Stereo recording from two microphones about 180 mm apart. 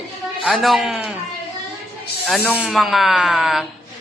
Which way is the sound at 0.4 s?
Centre (ahead or behind).